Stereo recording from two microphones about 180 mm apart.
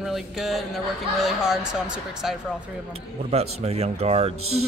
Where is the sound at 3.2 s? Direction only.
35° right (ahead or behind).